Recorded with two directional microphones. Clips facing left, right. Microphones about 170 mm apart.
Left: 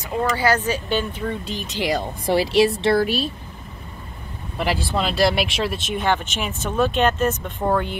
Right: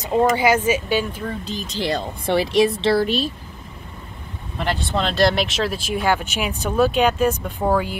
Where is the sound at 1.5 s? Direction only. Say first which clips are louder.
Right 1 dB; 35° right (ahead or behind).